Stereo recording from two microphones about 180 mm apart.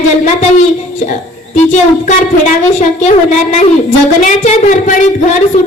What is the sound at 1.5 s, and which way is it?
A woman's voice, 40° left (ahead or behind).